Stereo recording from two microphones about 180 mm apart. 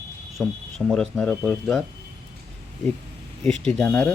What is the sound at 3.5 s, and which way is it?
Speech, 5° left (ahead or behind).